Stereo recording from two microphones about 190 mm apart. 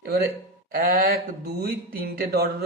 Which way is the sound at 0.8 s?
50° right (ahead or behind).